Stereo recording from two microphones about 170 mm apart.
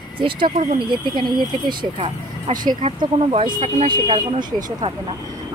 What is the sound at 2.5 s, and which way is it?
Speech, 55° right (ahead or behind).